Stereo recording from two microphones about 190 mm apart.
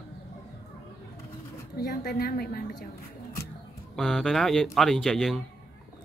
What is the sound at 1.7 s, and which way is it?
Speech, 50° left (ahead or behind).